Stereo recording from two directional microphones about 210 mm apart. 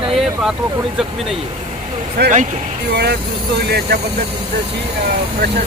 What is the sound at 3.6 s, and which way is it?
Speech, 50° right (ahead or behind).